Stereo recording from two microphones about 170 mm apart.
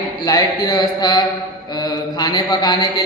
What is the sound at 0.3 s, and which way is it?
A man's voice, 20° left (ahead or behind).